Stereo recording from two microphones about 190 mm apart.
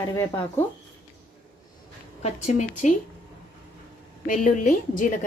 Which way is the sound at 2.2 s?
40° left (ahead or behind).